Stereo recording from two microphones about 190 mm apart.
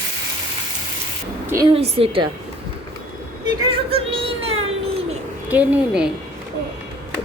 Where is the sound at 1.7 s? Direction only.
30° right (ahead or behind).